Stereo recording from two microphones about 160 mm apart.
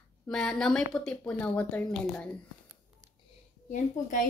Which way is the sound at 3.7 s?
55° left (ahead or behind).